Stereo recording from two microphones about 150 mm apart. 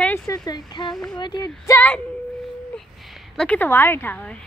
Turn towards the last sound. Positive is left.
turn(degrees=10)  # may be behind; listen again after turning